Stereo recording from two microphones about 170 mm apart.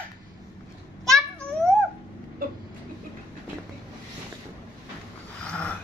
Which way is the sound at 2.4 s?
55° right (ahead or behind).